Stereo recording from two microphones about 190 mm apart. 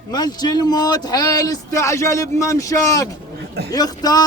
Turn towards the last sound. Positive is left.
turn(degrees=20)  # may be behind; listen again after turning